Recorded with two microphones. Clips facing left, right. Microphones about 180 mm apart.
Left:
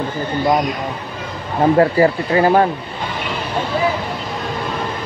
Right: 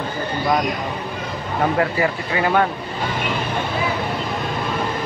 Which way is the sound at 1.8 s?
35° left (ahead or behind).